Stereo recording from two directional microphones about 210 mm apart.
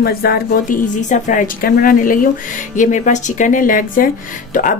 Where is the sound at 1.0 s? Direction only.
35° left (ahead or behind).